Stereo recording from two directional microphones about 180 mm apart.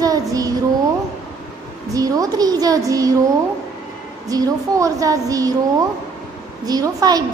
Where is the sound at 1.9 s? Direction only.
20° right (ahead or behind).